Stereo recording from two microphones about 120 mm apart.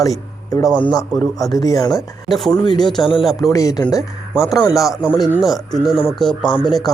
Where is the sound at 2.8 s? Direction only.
5° left (ahead or behind).